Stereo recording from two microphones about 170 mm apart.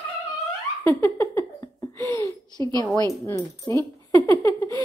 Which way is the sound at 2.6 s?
25° right (ahead or behind).